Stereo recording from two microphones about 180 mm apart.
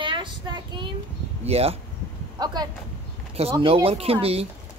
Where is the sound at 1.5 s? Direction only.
35° right (ahead or behind).